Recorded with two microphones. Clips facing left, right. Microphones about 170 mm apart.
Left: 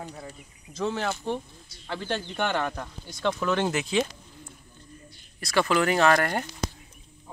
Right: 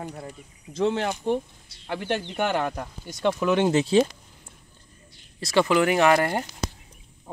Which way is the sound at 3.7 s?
30° right (ahead or behind).